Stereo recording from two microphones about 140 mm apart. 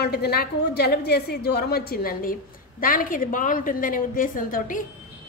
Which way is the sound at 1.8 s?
90° left.